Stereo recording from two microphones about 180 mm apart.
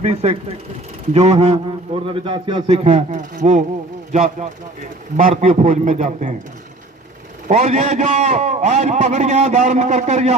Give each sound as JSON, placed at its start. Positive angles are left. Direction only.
{"t": 0.0, "sound": "a man's voice", "side_deg": -35}
{"t": 7.4, "sound": "a man's voice", "side_deg": -40}